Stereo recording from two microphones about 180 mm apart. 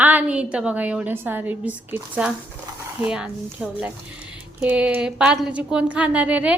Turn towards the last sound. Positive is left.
turn(degrees=-5)  # may be behind; listen again after turning